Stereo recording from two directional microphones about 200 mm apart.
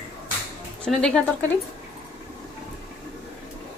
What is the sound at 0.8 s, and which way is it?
Speech, centre (ahead or behind).